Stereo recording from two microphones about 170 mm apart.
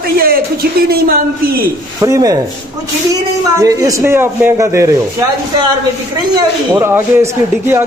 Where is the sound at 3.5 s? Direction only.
20° right (ahead or behind).